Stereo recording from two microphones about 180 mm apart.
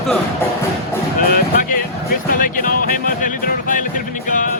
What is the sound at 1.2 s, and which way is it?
Music, 55° left (ahead or behind).